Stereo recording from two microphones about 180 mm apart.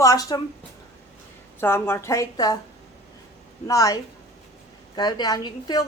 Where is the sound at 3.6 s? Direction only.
20° left (ahead or behind).